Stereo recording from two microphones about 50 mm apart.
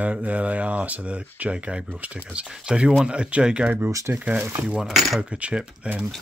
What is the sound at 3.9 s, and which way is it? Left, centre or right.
Speech, right.